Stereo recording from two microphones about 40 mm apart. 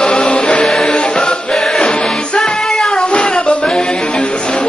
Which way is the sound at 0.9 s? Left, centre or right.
Left.